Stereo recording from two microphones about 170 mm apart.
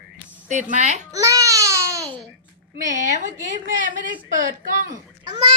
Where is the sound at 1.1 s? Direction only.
20° right (ahead or behind).